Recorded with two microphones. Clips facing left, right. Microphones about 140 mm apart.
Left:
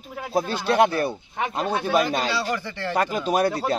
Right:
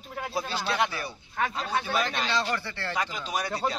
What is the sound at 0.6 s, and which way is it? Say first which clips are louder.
Speech: left 11 dB; 50° left (ahead or behind).